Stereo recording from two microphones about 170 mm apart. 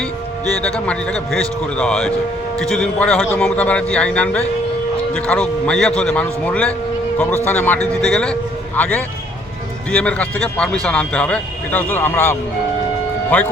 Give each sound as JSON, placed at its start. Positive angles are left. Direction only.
{"t": 0.6, "sound": "a man's voice", "side_deg": 5}